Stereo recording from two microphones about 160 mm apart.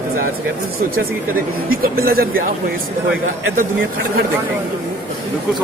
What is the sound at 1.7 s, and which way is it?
Speech, 65° right (ahead or behind).